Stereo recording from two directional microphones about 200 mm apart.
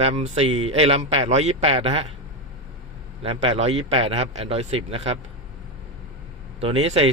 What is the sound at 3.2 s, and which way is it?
A man's voice, 30° right (ahead or behind).